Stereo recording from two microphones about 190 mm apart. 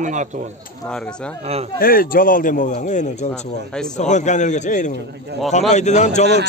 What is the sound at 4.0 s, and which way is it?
A man's voice, 40° left (ahead or behind).